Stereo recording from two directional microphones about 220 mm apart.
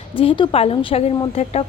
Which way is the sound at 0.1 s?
25° left (ahead or behind).